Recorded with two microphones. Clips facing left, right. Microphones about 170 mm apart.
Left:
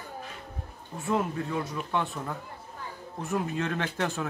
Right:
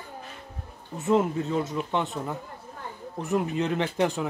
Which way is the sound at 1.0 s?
20° right (ahead or behind).